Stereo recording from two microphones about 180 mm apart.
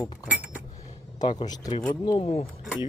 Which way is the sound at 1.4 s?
25° left (ahead or behind).